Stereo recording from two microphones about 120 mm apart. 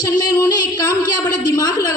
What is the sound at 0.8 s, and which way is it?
A woman's voice, 35° left (ahead or behind).